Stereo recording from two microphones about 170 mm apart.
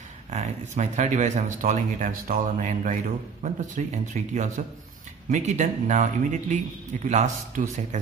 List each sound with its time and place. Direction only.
0.3 s speech: 45° right (ahead or behind)